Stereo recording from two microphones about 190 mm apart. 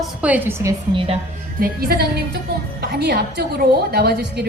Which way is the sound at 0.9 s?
30° right (ahead or behind).